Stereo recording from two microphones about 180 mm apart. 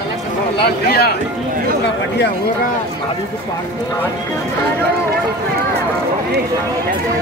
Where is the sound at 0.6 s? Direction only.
60° left (ahead or behind).